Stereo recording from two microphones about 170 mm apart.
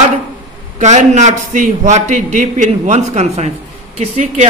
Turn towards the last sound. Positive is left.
turn(degrees=-45)  # may be behind; listen again after turning